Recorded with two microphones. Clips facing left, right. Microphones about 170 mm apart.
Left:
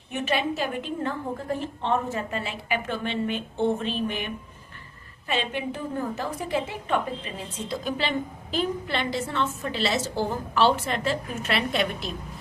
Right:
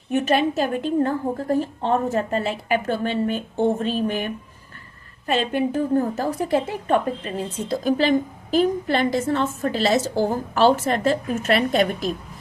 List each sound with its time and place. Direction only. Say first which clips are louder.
0.1 s a woman's voice: right 7 dB; 45° right (ahead or behind)